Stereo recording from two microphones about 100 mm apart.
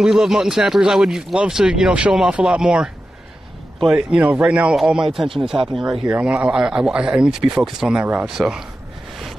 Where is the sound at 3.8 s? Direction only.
15° right (ahead or behind).